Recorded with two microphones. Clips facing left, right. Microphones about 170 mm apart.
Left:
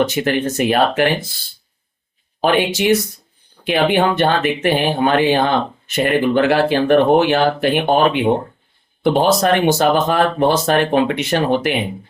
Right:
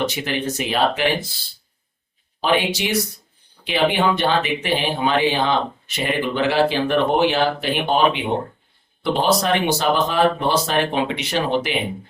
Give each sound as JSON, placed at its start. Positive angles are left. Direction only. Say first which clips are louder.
{"t": 0.1, "sound": "speech", "louder": "left 6 dB", "side_deg": 55}
{"t": 2.4, "sound": "speech", "louder": "left 4 dB", "side_deg": 50}